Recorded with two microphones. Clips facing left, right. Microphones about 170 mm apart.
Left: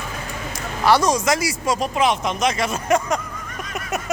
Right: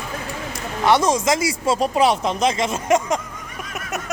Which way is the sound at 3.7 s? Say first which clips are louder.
Left 3 dB; centre (ahead or behind).